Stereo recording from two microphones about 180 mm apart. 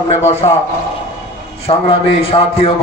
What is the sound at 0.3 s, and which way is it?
Speech, 35° left (ahead or behind).